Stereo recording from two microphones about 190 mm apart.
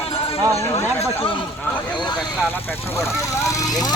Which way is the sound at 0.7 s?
30° left (ahead or behind).